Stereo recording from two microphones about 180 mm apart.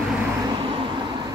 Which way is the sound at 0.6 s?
25° right (ahead or behind).